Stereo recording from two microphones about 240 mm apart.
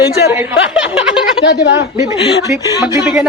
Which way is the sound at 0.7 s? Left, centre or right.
Centre.